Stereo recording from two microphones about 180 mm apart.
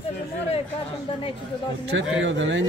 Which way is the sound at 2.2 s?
90° right.